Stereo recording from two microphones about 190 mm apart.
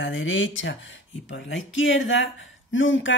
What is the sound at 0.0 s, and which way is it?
Speech, 85° left.